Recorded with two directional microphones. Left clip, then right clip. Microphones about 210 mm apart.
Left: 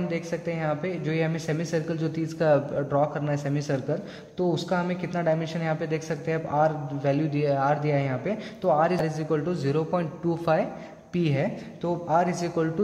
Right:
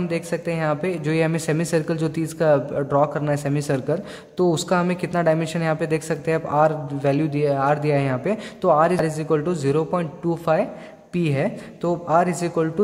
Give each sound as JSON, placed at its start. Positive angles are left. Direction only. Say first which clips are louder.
{"t": 0.1, "sound": "a man's voice", "louder": "right 5 dB", "side_deg": -25}